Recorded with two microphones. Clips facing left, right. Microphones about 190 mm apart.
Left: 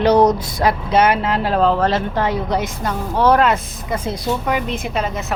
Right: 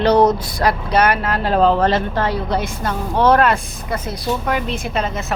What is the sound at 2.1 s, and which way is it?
A woman's voice, 15° left (ahead or behind).